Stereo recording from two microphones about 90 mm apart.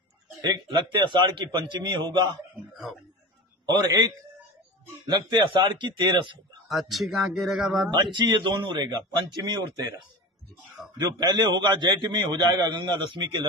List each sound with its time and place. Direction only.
0.4 s a man's voice: 55° right (ahead or behind)
3.6 s a man's voice: 50° right (ahead or behind)
5.1 s a man's voice: 55° right (ahead or behind)
6.7 s speech: centre (ahead or behind)
8.0 s a man's voice: 60° right (ahead or behind)
11.1 s a man's voice: 55° right (ahead or behind)